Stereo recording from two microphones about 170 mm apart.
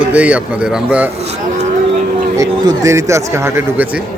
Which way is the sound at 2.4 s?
20° right (ahead or behind).